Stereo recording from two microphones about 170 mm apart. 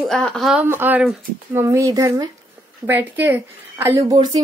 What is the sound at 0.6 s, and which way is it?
A woman's voice, 10° right (ahead or behind).